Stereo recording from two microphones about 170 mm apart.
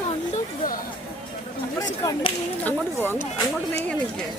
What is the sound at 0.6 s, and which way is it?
Speech, 55° left (ahead or behind).